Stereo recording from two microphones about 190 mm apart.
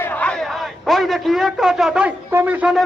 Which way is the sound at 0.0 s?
10° left (ahead or behind).